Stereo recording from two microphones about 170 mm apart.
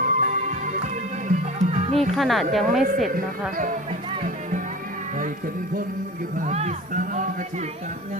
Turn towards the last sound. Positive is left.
turn(degrees=-45)  # may be behind; listen again after turning